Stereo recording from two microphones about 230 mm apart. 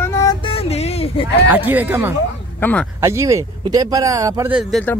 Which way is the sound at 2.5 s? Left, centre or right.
Centre.